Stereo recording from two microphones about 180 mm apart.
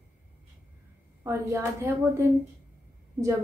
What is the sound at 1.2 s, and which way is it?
A woman's voice, 15° right (ahead or behind).